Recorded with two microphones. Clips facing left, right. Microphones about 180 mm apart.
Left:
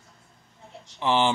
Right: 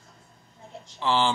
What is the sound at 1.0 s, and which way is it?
Speech, 20° left (ahead or behind).